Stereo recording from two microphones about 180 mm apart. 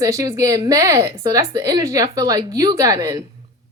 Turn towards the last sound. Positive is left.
turn(degrees=-20)  # may be behind; listen again after turning